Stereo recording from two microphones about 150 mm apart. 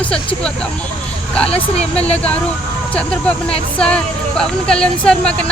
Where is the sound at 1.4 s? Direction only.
40° left (ahead or behind).